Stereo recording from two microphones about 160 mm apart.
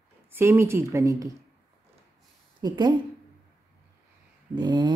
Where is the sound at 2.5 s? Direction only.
25° right (ahead or behind).